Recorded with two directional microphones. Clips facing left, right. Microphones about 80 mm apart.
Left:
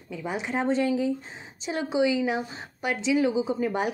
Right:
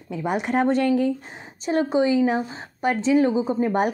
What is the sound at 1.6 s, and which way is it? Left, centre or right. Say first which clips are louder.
A woman's voice: right 5 dB; right.